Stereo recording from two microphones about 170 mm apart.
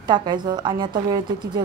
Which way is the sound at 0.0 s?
25° right (ahead or behind).